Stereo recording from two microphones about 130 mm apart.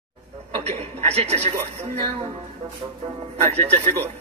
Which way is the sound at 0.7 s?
55° right (ahead or behind).